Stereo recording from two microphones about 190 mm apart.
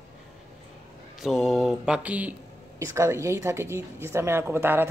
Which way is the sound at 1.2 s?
Centre (ahead or behind).